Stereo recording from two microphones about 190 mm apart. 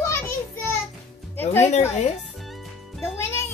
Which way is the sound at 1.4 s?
10° left (ahead or behind).